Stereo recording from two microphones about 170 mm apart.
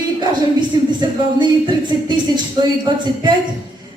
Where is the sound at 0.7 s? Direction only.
25° right (ahead or behind).